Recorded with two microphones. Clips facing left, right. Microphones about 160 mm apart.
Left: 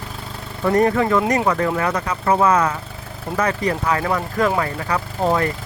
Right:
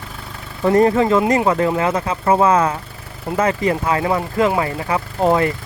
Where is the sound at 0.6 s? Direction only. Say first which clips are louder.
Right 3 dB; 25° right (ahead or behind).